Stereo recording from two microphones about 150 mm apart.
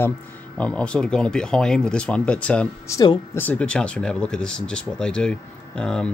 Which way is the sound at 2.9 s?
25° left (ahead or behind).